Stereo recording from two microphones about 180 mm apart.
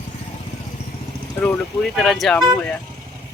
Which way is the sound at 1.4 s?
10° left (ahead or behind).